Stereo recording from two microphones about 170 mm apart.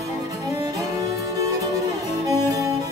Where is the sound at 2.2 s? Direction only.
20° right (ahead or behind).